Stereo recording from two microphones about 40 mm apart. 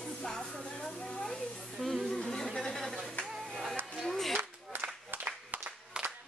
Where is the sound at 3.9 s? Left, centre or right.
Centre.